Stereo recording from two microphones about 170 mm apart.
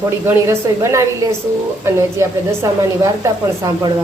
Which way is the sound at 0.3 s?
15° right (ahead or behind).